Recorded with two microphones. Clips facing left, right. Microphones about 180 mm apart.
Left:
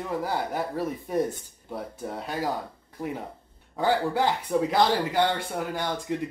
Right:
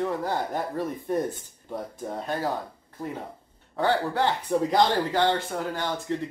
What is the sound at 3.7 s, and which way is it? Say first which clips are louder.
Speech: even; 10° left (ahead or behind).